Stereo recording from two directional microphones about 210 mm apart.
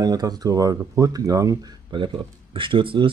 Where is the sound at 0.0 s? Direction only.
20° right (ahead or behind).